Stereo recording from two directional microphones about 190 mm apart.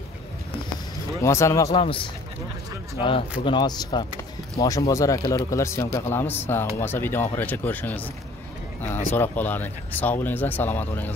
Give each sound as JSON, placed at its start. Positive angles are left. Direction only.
{"t": 1.2, "sound": "a man's voice", "side_deg": 15}
{"t": 1.7, "sound": "a man's voice", "side_deg": 25}
{"t": 9.1, "sound": "a man's voice", "side_deg": 10}